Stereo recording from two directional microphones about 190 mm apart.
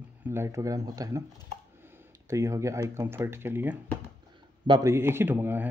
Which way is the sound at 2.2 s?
15° right (ahead or behind).